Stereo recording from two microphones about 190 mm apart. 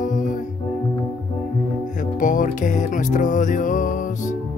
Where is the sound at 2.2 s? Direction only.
45° left (ahead or behind).